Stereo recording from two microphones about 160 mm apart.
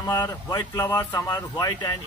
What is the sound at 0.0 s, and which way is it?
Speech, 20° left (ahead or behind).